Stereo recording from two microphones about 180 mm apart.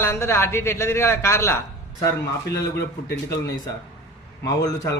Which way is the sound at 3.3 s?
20° left (ahead or behind).